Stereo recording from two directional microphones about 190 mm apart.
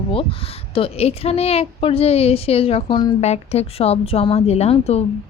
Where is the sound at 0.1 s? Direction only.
30° left (ahead or behind).